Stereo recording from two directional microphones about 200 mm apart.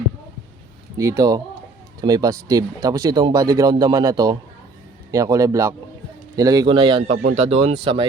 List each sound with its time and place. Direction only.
0.9 s speech: 15° right (ahead or behind)